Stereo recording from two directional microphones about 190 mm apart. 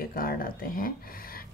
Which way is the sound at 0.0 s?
50° left (ahead or behind).